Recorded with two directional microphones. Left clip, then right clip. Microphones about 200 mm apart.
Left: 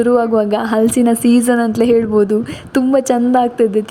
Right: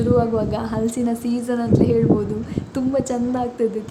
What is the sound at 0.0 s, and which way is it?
A woman's voice, 30° left (ahead or behind).